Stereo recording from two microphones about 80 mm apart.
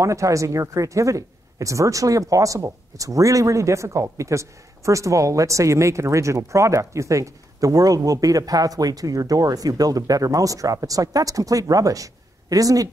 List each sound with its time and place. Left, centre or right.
0.0 s speech: right